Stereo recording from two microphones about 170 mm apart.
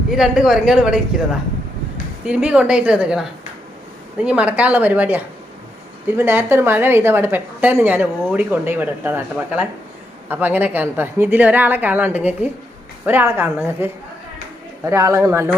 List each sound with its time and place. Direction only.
0.1 s speech: 5° right (ahead or behind)
2.2 s a woman's voice: 5° right (ahead or behind)